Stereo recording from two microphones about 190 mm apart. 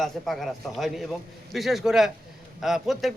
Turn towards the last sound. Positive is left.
turn(degrees=0)  # may be behind; listen again after turning